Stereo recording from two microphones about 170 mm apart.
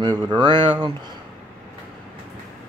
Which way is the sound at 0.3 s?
25° right (ahead or behind).